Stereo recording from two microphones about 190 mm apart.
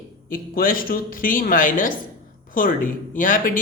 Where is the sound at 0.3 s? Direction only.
50° left (ahead or behind).